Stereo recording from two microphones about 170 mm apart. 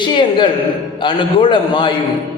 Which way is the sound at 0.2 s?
30° left (ahead or behind).